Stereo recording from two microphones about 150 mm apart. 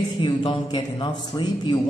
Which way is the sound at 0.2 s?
35° left (ahead or behind).